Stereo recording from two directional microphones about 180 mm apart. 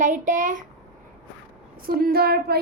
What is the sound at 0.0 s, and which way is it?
Speech, 45° right (ahead or behind).